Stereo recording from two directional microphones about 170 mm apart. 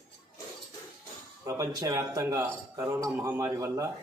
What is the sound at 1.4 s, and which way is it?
A man's voice, 20° right (ahead or behind).